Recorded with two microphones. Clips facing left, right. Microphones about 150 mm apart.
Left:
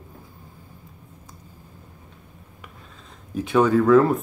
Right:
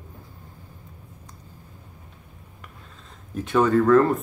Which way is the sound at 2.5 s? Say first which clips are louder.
Left 1 dB; centre (ahead or behind).